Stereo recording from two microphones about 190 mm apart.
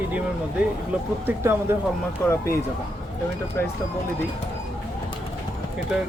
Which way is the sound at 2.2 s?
10° left (ahead or behind).